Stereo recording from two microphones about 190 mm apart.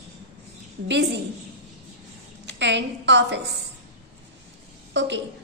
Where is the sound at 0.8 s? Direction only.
65° right (ahead or behind).